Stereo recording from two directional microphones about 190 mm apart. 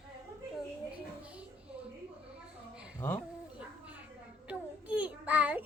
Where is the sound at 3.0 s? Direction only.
10° left (ahead or behind).